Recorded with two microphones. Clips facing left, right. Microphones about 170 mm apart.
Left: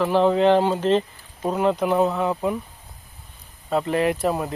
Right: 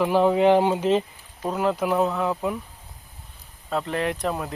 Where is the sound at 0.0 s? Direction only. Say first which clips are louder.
Left 1 dB; 10° right (ahead or behind).